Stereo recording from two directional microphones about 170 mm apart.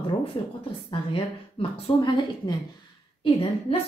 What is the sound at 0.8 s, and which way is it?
A woman's voice, 30° left (ahead or behind).